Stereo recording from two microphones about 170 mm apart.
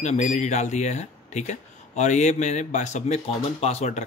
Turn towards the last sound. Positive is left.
turn(degrees=40)  # may be behind; listen again after turning